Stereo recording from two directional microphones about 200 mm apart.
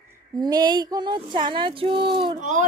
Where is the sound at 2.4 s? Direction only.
40° right (ahead or behind).